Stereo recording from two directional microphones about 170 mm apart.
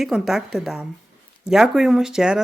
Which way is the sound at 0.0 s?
Centre (ahead or behind).